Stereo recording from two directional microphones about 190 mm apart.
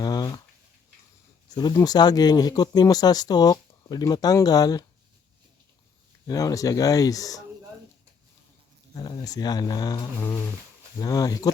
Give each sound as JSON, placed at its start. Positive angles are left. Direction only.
{"t": 0.0, "sound": "a sound", "side_deg": 20}
{"t": 1.5, "sound": "speech", "side_deg": 20}
{"t": 6.2, "sound": "speech", "side_deg": 20}
{"t": 9.0, "sound": "speech", "side_deg": 20}